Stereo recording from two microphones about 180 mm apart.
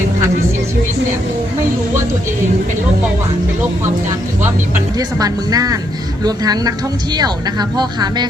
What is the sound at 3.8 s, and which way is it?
Speech, 15° right (ahead or behind).